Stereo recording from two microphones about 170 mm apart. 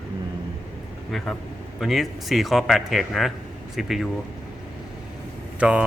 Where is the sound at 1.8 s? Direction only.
Centre (ahead or behind).